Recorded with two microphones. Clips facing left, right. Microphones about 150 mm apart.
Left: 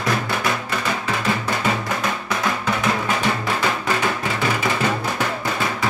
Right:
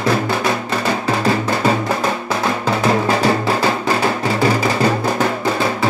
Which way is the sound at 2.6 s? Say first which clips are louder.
Right 8 dB; 35° right (ahead or behind).